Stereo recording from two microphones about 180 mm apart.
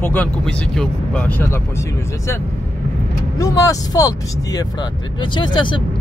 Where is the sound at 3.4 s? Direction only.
20° left (ahead or behind).